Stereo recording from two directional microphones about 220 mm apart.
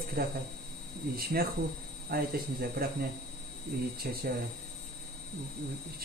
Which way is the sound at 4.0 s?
45° right (ahead or behind).